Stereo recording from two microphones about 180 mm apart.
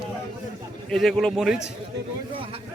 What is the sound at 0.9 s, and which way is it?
Speech, centre (ahead or behind).